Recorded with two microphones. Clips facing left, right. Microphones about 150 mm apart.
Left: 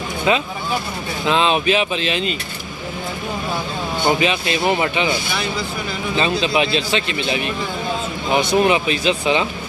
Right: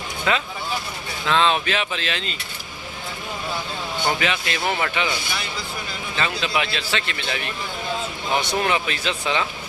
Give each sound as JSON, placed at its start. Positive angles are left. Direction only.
{"t": 0.3, "sound": "speech", "side_deg": 20}
{"t": 4.0, "sound": "speech", "side_deg": 20}
{"t": 6.1, "sound": "speech", "side_deg": 20}